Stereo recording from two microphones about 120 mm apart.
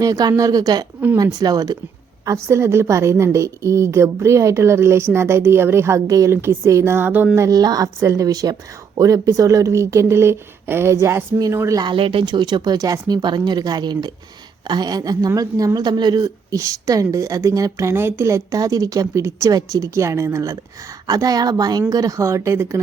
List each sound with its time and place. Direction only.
0.0 s a woman's voice: 30° right (ahead or behind); by 7.3 s 15° right (ahead or behind)
7.3 s a woman's voice: 30° right (ahead or behind)
11.8 s a woman's voice: 45° right (ahead or behind); by 22.8 s 25° right (ahead or behind)